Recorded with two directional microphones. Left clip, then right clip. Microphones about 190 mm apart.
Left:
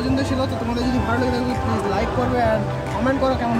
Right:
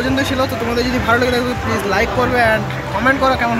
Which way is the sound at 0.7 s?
Centre (ahead or behind).